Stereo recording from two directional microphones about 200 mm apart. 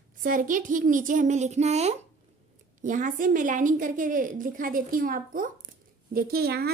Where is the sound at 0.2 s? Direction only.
40° right (ahead or behind).